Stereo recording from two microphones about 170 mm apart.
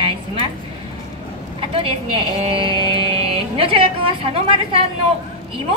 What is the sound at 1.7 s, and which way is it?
Speech, 35° right (ahead or behind).